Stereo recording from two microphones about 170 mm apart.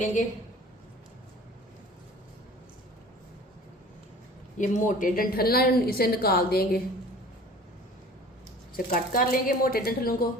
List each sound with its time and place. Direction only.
4.5 s a woman's voice: 50° left (ahead or behind); by 6.8 s 65° left (ahead or behind)
8.7 s a woman's voice: 55° left (ahead or behind)